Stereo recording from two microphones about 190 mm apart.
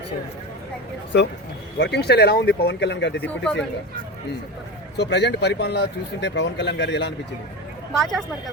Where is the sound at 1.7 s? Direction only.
60° left (ahead or behind).